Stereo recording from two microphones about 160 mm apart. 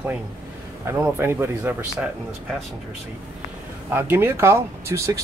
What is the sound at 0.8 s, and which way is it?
Speech, 15° right (ahead or behind).